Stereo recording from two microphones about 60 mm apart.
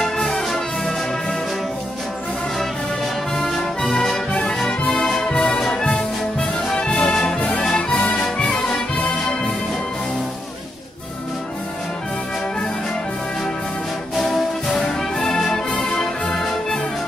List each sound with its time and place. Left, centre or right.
0.0 s music: centre
3.3 s music: centre
7.3 s music: left
14.1 s music: centre